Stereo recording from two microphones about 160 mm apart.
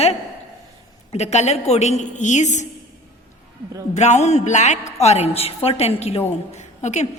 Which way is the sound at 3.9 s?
45° left (ahead or behind).